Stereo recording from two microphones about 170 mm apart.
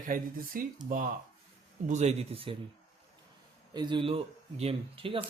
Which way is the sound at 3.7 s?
25° right (ahead or behind).